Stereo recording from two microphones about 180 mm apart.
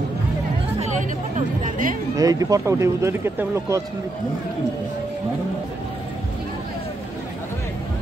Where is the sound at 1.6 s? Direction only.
50° right (ahead or behind).